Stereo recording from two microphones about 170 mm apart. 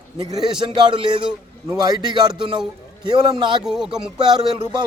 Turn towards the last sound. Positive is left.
turn(degrees=-25)  # may be behind; listen again after turning